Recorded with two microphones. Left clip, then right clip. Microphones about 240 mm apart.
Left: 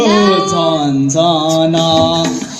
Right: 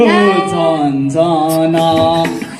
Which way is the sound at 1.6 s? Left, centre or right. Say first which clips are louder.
Even; left.